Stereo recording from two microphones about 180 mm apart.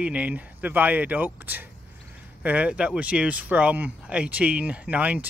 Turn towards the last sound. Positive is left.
turn(degrees=-10)  # may be behind; listen again after turning